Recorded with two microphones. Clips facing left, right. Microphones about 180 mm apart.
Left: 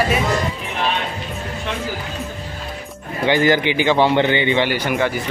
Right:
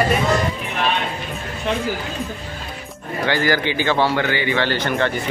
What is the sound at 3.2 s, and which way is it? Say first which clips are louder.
Speech: left 4 dB; 20° left (ahead or behind).